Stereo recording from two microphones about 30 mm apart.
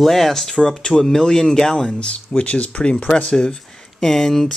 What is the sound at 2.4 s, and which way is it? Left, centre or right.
Speech, left.